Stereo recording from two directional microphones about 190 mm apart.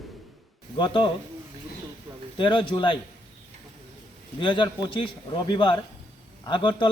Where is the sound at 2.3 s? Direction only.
25° left (ahead or behind).